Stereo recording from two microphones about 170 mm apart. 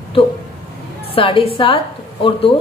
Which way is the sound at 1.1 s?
30° left (ahead or behind).